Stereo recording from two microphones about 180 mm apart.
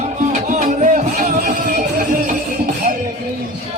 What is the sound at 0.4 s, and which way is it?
Music, 45° right (ahead or behind).